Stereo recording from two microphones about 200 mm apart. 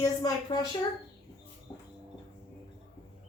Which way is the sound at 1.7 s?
15° left (ahead or behind).